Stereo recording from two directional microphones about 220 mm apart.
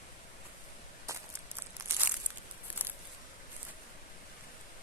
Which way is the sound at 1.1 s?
15° right (ahead or behind).